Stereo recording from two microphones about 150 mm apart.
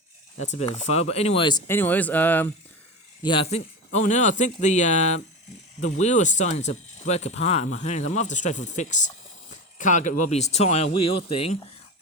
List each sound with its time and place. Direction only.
0.3 s speech: 50° left (ahead or behind)
1.6 s speech: 15° left (ahead or behind)
3.2 s speech: 40° left (ahead or behind)